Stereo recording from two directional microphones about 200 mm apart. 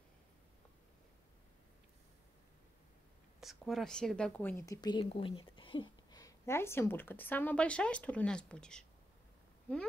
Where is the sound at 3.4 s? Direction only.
Centre (ahead or behind).